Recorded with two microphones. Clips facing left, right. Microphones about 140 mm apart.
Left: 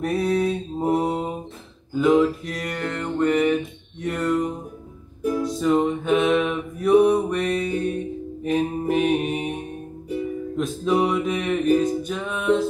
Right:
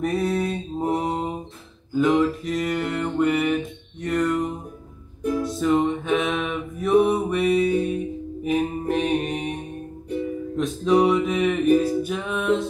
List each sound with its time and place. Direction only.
0.0 s mantra: centre (ahead or behind)
2.0 s music: centre (ahead or behind)
8.5 s mantra: centre (ahead or behind)
10.0 s music: centre (ahead or behind)